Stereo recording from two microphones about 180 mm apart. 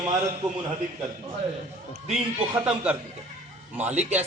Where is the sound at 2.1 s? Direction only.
10° right (ahead or behind).